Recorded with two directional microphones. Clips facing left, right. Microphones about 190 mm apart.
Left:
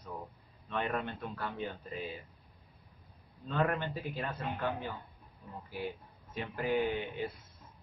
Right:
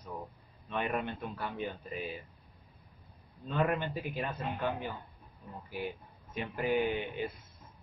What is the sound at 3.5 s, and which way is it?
Speech, 15° right (ahead or behind).